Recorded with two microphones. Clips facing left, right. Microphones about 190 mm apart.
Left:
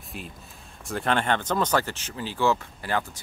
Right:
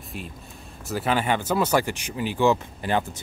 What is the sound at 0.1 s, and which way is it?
Speech, centre (ahead or behind).